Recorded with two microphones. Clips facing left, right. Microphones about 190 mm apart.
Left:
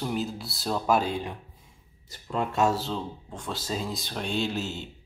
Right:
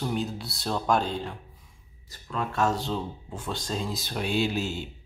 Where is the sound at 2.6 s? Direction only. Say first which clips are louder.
Right 1 dB; 5° left (ahead or behind).